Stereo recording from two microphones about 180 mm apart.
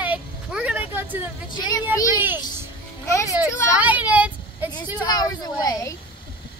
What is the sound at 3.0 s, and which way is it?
Speech, 15° left (ahead or behind).